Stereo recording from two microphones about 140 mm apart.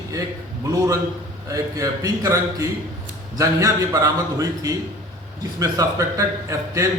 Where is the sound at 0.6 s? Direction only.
25° right (ahead or behind).